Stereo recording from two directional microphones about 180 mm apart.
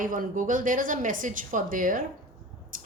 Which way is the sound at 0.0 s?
50° right (ahead or behind).